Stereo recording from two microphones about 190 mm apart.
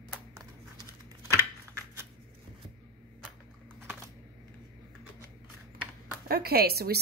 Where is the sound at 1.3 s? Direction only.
15° right (ahead or behind).